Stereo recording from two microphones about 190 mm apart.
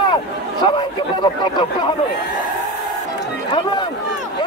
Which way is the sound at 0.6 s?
20° left (ahead or behind).